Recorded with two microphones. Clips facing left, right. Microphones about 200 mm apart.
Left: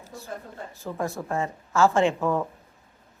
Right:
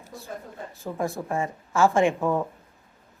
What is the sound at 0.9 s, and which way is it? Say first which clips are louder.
A woman's voice: right 1 dB; 15° right (ahead or behind).